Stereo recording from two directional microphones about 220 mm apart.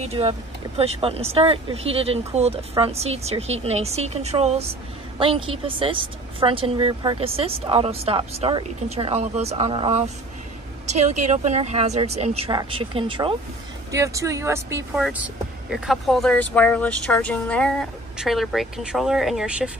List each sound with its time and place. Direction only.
0.0 s a woman's voice: 25° right (ahead or behind); by 19.7 s 5° right (ahead or behind)